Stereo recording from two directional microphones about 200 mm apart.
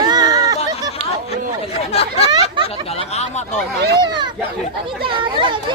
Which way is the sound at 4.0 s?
20° right (ahead or behind).